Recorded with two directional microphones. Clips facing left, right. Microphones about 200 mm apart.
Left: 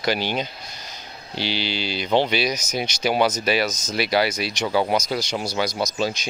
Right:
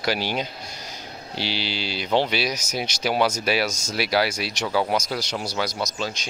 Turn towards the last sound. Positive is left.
turn(degrees=10)  # may be behind; listen again after turning